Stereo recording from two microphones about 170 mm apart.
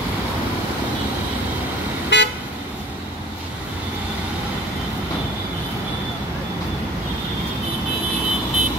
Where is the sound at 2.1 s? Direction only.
90° left.